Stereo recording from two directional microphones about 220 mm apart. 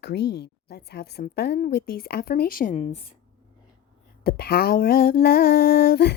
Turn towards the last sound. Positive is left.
turn(degrees=45)  # may be behind; listen again after turning